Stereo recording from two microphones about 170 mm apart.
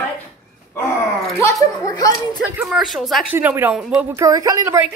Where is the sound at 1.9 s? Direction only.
20° left (ahead or behind).